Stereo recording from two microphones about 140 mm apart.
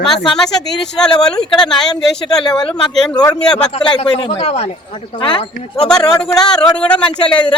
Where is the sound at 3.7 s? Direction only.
40° left (ahead or behind).